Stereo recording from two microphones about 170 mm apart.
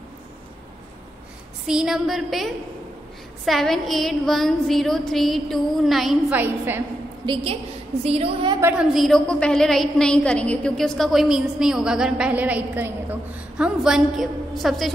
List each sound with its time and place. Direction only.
1.7 s a woman's voice: 5° right (ahead or behind)
6.4 s a woman's voice: 10° right (ahead or behind)
7.2 s a woman's voice: 25° right (ahead or behind)
8.5 s a woman's voice: 10° right (ahead or behind)
8.9 s a woman's voice: centre (ahead or behind)